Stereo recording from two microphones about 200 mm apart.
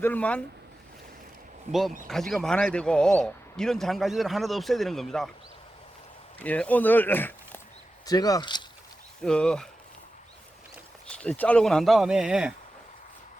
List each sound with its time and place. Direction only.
0.0 s speech: 5° left (ahead or behind)
2.0 s a man's voice: centre (ahead or behind)
6.4 s speech: 5° left (ahead or behind)
9.2 s a man's voice: 5° left (ahead or behind)
11.1 s a man's voice: 5° left (ahead or behind)